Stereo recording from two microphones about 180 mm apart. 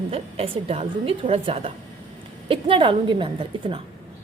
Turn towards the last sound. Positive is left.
turn(degrees=-25)  # may be behind; listen again after turning